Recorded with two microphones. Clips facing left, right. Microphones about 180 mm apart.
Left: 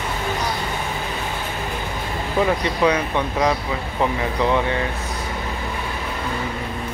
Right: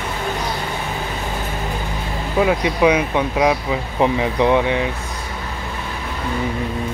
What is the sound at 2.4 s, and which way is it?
Speech, 10° right (ahead or behind).